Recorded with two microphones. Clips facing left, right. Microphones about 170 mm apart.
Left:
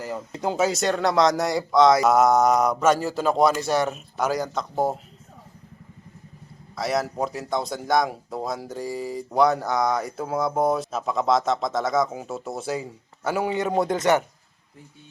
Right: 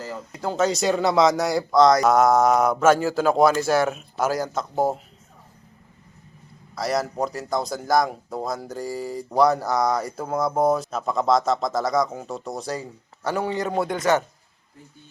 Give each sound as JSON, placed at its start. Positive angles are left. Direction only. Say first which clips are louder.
{"t": 0.0, "sound": "speech", "louder": "left 2 dB", "side_deg": 15}
{"t": 0.6, "sound": "speech", "louder": "right 2 dB", "side_deg": 0}
{"t": 6.7, "sound": "speech", "louder": "right 1 dB", "side_deg": 0}
{"t": 13.7, "sound": "speech", "louder": "left 1 dB", "side_deg": 25}